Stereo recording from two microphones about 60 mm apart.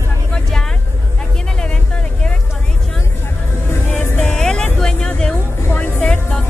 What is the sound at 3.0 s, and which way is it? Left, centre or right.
Music, left.